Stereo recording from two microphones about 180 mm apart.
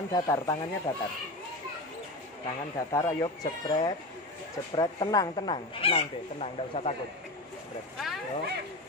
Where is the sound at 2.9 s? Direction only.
20° left (ahead or behind); by 6.9 s 35° left (ahead or behind).